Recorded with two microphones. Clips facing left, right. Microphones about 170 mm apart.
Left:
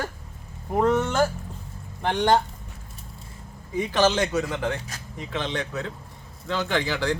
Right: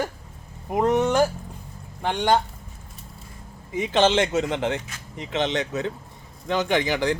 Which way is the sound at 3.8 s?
25° right (ahead or behind).